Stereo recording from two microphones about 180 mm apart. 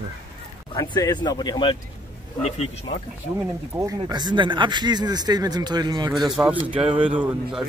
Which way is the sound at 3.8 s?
20° right (ahead or behind).